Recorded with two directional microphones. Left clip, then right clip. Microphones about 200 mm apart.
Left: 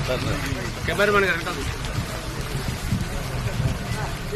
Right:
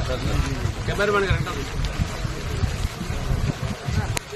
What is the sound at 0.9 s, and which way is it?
Speech, 35° left (ahead or behind).